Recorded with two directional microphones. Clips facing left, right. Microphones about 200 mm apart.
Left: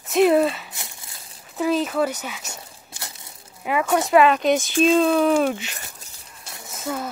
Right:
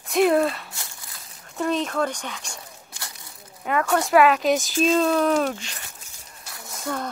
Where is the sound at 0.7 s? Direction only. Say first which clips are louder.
Left 1 dB; 25° left (ahead or behind).